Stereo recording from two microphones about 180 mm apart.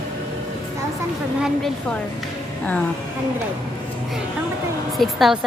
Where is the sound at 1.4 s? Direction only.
Centre (ahead or behind).